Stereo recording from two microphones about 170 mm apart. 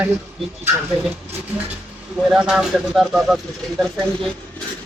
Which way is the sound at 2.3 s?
5° right (ahead or behind).